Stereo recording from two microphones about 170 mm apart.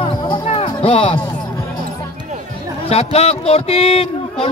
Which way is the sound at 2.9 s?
35° left (ahead or behind).